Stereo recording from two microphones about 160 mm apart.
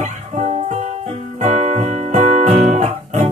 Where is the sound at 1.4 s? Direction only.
45° right (ahead or behind).